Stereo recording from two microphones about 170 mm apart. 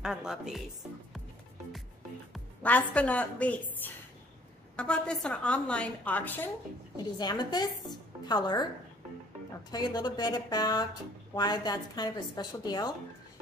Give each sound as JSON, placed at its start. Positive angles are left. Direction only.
{"t": 0.0, "sound": "speech", "side_deg": -5}
{"t": 2.3, "sound": "a woman's voice", "side_deg": 10}
{"t": 7.2, "sound": "a woman's voice", "side_deg": 25}
{"t": 9.7, "sound": "a woman's voice", "side_deg": 25}